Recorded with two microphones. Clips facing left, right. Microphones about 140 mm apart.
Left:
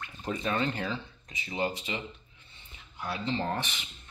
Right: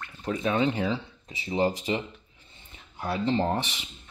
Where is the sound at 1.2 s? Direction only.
30° right (ahead or behind).